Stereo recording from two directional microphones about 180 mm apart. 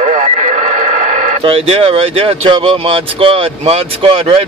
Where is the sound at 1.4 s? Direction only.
30° right (ahead or behind).